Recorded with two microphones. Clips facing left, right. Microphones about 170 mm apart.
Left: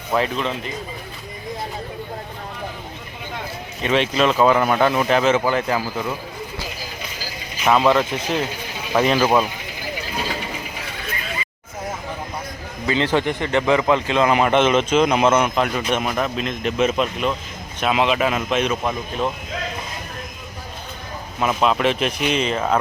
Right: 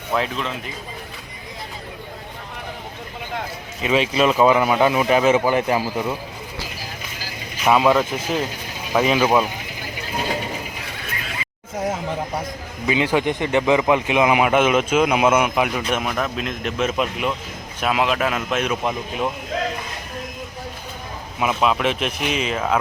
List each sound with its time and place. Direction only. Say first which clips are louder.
0.1 s speech: left 2 dB; centre (ahead or behind)
3.8 s a man's voice: even; 10° right (ahead or behind)
7.6 s speech: even; 5° right (ahead or behind)
12.9 s a man's voice: even; 10° right (ahead or behind)
21.3 s speech: left 1 dB; 5° right (ahead or behind)